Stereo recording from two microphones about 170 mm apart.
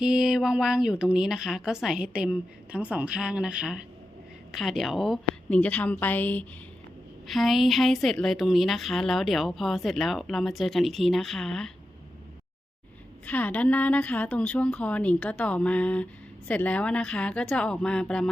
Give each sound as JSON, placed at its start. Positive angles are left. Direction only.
{"t": 0.0, "sound": "a woman's voice", "side_deg": -5}
{"t": 13.2, "sound": "a woman's voice", "side_deg": 10}